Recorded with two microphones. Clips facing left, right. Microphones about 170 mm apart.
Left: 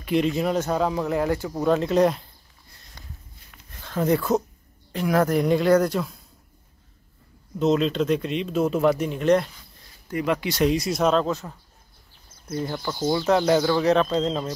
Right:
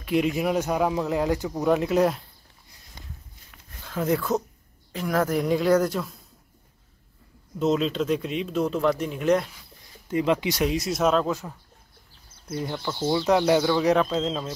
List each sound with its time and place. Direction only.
0.0 s speech: 5° right (ahead or behind)
3.8 s speech: centre (ahead or behind)
7.5 s speech: 5° right (ahead or behind)
10.0 s speech: 20° right (ahead or behind)
10.6 s speech: centre (ahead or behind)
13.0 s speech: centre (ahead or behind)